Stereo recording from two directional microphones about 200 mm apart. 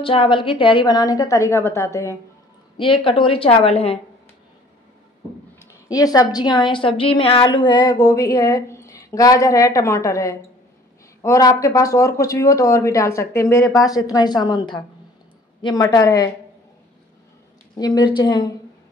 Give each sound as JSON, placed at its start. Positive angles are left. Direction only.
{"t": 0.0, "sound": "a woman's voice", "side_deg": 25}
{"t": 2.8, "sound": "a woman's voice", "side_deg": 25}
{"t": 5.6, "sound": "a woman's voice", "side_deg": 15}
{"t": 17.7, "sound": "a woman's voice", "side_deg": 20}